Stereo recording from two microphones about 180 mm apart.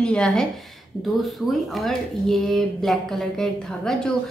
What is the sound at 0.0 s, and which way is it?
A woman's voice, 5° left (ahead or behind).